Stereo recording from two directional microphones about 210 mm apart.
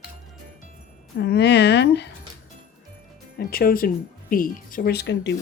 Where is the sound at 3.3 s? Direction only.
45° left (ahead or behind).